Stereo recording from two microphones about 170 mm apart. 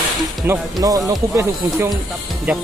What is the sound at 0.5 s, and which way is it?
Speech, 20° right (ahead or behind).